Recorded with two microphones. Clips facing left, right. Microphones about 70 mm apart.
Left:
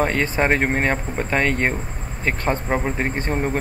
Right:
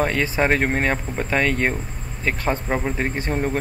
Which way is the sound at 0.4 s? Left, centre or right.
Centre.